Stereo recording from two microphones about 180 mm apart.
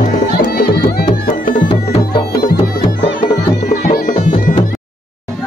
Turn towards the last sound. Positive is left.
turn(degrees=45)  # may be behind; listen again after turning